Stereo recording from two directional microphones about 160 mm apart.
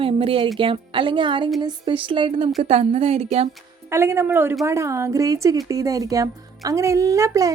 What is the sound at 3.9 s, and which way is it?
A woman's voice, 15° right (ahead or behind).